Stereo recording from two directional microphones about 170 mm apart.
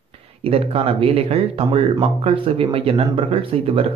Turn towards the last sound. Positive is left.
turn(degrees=-35)  # may be behind; listen again after turning